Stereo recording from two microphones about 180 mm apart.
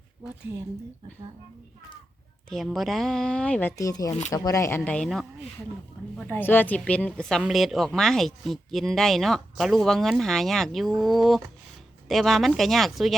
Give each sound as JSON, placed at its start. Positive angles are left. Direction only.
{"t": 2.5, "sound": "a woman's voice", "side_deg": 0}
{"t": 4.8, "sound": "a woman's voice", "side_deg": 5}